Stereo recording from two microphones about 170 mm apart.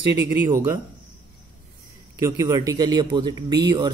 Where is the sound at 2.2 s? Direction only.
20° right (ahead or behind).